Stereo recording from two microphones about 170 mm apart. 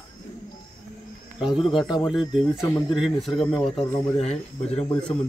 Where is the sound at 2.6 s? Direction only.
20° left (ahead or behind).